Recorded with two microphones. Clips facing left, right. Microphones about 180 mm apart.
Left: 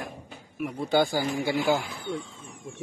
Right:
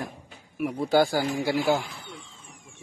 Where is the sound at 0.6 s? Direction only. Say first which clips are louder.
Right 2 dB; 5° right (ahead or behind).